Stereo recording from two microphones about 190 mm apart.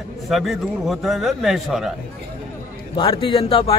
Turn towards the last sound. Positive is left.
turn(degrees=30)  # may be behind; listen again after turning